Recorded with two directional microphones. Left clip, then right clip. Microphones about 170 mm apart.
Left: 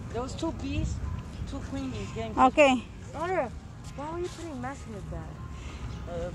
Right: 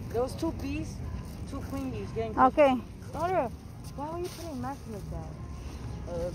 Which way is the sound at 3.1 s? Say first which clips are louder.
Right 1 dB; 10° left (ahead or behind).